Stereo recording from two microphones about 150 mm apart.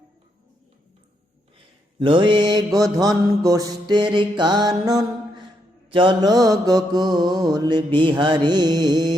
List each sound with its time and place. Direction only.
2.0 s mantra: 35° right (ahead or behind)